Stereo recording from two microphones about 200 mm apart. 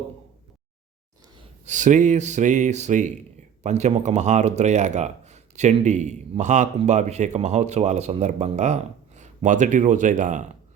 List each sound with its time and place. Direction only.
1.4 s speech: 35° right (ahead or behind)